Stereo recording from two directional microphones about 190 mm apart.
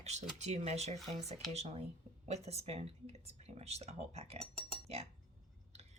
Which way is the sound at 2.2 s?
35° right (ahead or behind).